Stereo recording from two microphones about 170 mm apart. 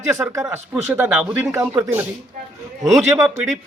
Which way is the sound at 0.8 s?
10° right (ahead or behind).